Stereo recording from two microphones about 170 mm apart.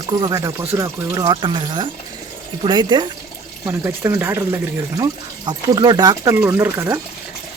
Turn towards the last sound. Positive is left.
turn(degrees=-15)  # may be behind; listen again after turning